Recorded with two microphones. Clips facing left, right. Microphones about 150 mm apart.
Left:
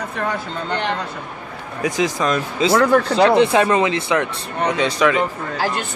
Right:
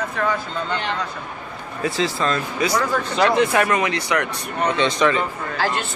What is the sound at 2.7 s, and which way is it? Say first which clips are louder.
Speech: left 11 dB; 65° left (ahead or behind).